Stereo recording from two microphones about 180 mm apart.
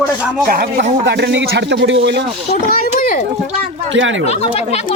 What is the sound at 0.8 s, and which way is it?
Speech, 75° right (ahead or behind).